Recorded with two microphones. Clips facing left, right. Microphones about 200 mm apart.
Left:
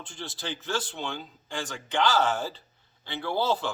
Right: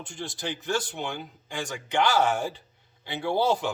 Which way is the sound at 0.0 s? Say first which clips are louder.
Right 3 dB; 15° right (ahead or behind).